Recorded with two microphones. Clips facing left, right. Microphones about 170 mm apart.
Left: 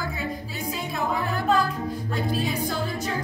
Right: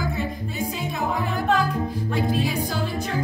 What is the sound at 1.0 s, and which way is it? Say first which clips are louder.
Music: right 1 dB; 20° right (ahead or behind).